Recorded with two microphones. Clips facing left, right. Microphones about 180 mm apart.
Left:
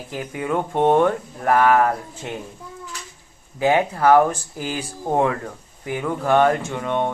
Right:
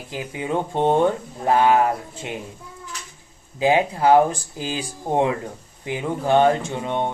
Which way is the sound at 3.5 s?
20° right (ahead or behind).